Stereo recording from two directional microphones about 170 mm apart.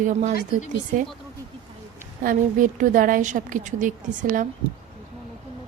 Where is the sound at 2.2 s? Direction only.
50° right (ahead or behind).